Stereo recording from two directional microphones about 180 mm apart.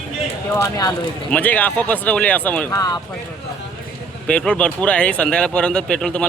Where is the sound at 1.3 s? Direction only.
10° left (ahead or behind).